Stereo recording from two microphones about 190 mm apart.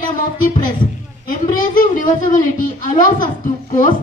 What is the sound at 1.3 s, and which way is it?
A woman's voice, 45° left (ahead or behind).